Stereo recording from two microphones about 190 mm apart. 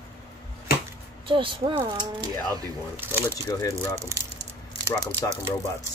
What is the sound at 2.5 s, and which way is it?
Speech, 10° right (ahead or behind).